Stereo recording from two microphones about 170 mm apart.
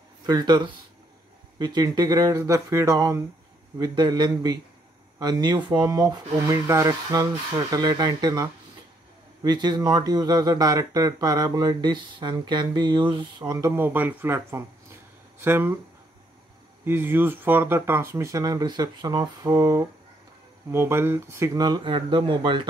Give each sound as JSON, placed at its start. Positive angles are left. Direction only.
{"t": 0.3, "sound": "speech", "side_deg": -25}
{"t": 16.8, "sound": "speech", "side_deg": -10}